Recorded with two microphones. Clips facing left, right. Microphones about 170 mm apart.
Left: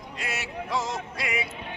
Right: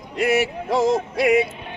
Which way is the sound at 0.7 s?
30° right (ahead or behind).